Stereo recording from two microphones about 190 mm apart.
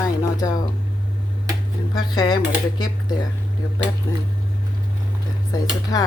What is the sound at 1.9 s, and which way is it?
Speech, 20° left (ahead or behind).